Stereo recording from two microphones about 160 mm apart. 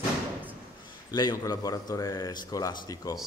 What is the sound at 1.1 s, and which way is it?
A man's voice, 25° left (ahead or behind).